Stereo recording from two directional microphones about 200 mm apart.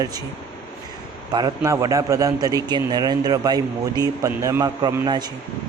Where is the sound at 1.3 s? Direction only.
20° right (ahead or behind).